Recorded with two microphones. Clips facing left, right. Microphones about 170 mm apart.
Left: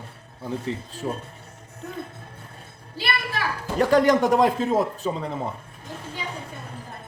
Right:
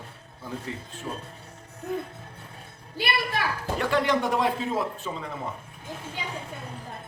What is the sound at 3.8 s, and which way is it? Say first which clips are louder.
A man's voice: left 7 dB; 45° left (ahead or behind).